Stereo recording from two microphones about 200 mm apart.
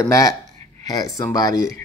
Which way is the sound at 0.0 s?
15° left (ahead or behind).